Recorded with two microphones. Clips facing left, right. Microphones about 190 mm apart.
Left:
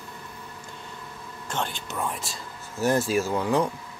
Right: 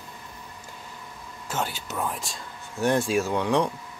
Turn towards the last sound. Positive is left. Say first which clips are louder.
# even
turn(degrees=5)  # may be behind; listen again after turning